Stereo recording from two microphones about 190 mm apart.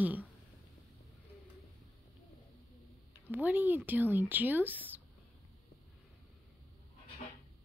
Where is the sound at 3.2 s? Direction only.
10° right (ahead or behind).